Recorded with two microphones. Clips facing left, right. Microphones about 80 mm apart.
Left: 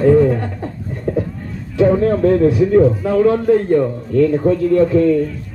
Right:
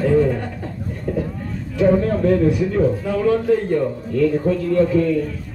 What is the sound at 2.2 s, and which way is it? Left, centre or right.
Speech, centre.